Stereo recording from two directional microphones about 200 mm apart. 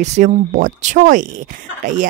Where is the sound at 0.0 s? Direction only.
35° right (ahead or behind).